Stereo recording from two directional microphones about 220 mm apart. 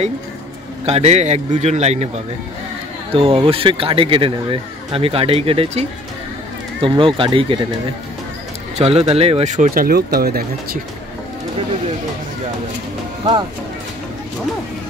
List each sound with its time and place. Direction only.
0.8 s speech: 30° right (ahead or behind)
8.7 s speech: 30° right (ahead or behind); by 10.8 s 45° right (ahead or behind)